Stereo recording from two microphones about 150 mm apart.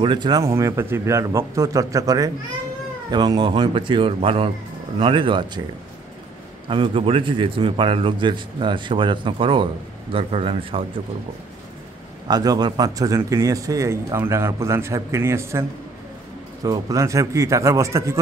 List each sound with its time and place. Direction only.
0.0 s a man's voice: 30° right (ahead or behind)
6.7 s a man's voice: 35° right (ahead or behind)
12.3 s speech: 25° right (ahead or behind)
16.6 s speech: 20° right (ahead or behind)